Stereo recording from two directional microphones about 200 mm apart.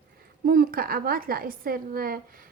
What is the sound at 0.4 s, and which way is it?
A woman's voice, 50° right (ahead or behind).